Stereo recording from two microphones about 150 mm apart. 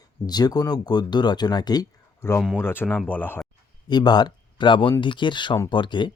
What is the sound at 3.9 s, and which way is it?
Speech, 30° left (ahead or behind).